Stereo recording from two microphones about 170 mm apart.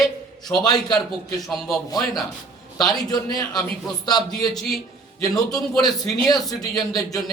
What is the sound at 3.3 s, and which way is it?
Speech, 25° left (ahead or behind).